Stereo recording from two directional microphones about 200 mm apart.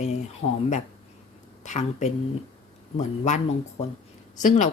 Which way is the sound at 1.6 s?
35° left (ahead or behind).